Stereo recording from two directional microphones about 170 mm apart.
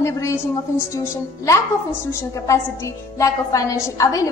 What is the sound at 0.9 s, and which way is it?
A woman's voice, 20° left (ahead or behind).